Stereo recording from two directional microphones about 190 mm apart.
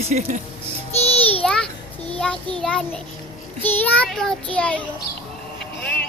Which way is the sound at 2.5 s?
5° left (ahead or behind).